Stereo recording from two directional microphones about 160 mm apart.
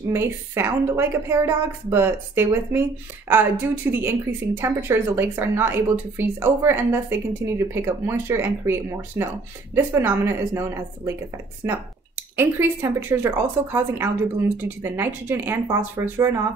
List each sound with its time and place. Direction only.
0.1 s speech: 15° right (ahead or behind)
12.4 s speech: 15° right (ahead or behind)